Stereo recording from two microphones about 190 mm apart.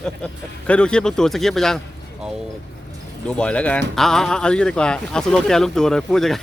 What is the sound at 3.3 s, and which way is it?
Speech, 5° left (ahead or behind).